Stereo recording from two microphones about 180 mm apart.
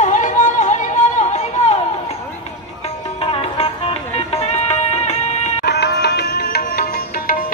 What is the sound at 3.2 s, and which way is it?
Music, 30° left (ahead or behind).